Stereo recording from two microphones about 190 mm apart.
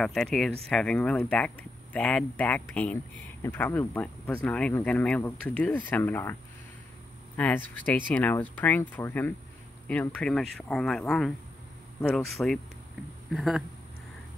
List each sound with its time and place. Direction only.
0.0 s speech: centre (ahead or behind)
7.3 s speech: 10° left (ahead or behind)